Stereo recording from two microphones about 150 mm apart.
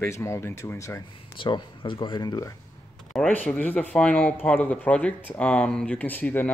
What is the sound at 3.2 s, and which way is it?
Speech, 10° left (ahead or behind).